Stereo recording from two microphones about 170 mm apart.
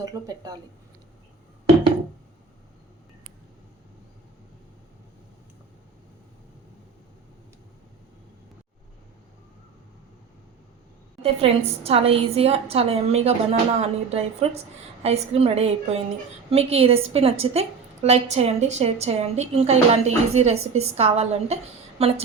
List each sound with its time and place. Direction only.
0.0 s speech: 20° right (ahead or behind)
11.2 s a woman's voice: 35° right (ahead or behind)